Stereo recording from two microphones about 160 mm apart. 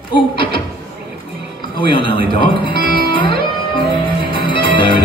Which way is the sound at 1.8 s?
30° left (ahead or behind).